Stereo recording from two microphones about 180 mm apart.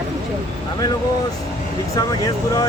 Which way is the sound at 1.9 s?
20° left (ahead or behind).